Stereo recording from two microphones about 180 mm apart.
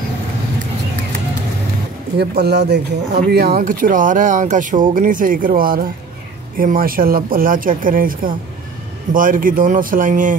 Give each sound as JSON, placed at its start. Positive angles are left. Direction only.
{"t": 2.1, "sound": "speech", "side_deg": -65}